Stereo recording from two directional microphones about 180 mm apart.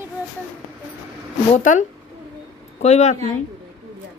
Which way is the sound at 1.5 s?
45° left (ahead or behind).